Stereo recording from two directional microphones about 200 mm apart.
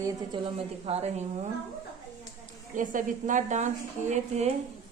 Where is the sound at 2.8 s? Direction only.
40° right (ahead or behind).